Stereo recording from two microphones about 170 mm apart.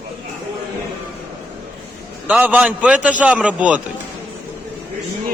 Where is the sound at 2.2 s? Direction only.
10° right (ahead or behind).